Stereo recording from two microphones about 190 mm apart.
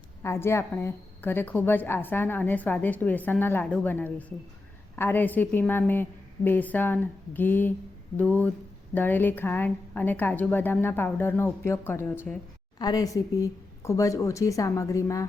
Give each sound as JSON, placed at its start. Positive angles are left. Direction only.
{"t": 0.2, "sound": "a woman's voice", "side_deg": 15}